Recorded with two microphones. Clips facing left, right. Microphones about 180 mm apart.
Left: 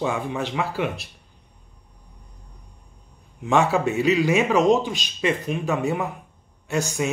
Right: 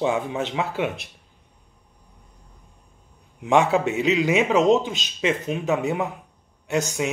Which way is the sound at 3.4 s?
20° right (ahead or behind).